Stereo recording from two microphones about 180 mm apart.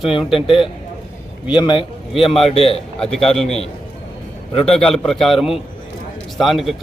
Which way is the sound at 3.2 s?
Centre (ahead or behind).